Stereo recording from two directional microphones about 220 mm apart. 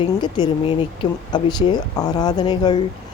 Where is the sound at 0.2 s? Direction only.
20° left (ahead or behind).